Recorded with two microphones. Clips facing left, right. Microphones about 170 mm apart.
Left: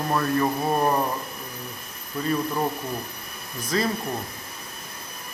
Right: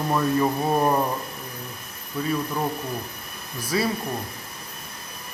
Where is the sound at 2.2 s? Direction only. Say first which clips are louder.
Even; 5° right (ahead or behind).